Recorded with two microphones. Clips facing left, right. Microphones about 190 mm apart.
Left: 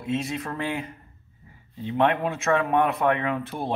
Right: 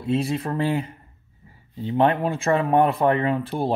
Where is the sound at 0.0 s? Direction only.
35° right (ahead or behind).